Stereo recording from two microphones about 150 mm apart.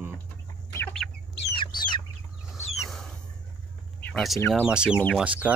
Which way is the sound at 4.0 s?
5° left (ahead or behind).